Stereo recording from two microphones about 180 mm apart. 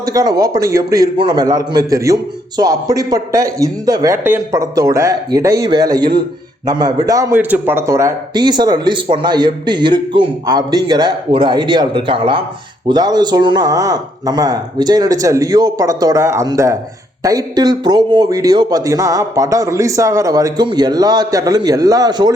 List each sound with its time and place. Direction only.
0.0 s a man's voice: 20° right (ahead or behind)